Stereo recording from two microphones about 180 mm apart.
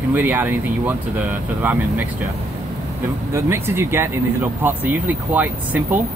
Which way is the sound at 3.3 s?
15° right (ahead or behind).